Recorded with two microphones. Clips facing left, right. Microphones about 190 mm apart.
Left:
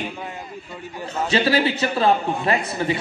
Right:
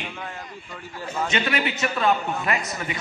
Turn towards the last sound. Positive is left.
turn(degrees=30)  # may be behind; listen again after turning